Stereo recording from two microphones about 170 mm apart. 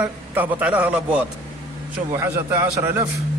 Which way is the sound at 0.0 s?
10° right (ahead or behind).